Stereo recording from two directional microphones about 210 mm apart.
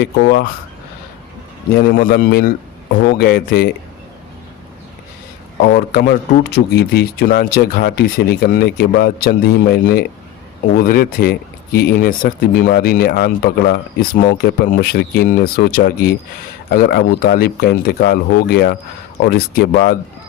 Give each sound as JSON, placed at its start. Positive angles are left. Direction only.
{"t": 0.0, "sound": "speech", "side_deg": 50}
{"t": 1.7, "sound": "speech", "side_deg": 40}
{"t": 5.6, "sound": "speech", "side_deg": 45}